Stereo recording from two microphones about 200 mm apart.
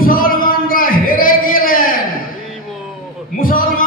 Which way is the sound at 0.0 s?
45° left (ahead or behind).